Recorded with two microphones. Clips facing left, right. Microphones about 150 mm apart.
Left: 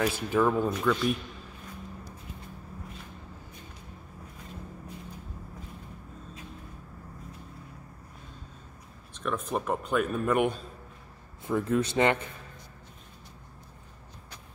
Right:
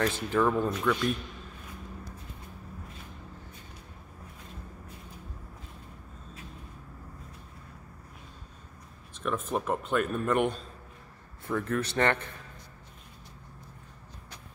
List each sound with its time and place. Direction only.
0.0 s speech: 10° left (ahead or behind)
9.2 s speech: 5° right (ahead or behind)
11.4 s speech: 15° left (ahead or behind)